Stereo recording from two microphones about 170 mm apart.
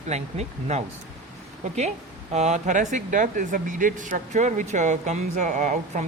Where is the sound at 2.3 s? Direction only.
45° right (ahead or behind).